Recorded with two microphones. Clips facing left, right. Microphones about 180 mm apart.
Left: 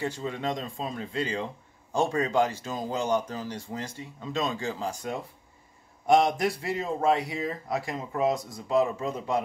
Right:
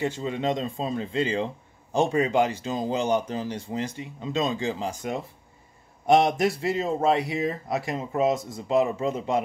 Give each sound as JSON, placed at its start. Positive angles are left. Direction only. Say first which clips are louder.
{"t": 0.0, "sound": "a man's voice", "louder": "right 4 dB", "side_deg": -20}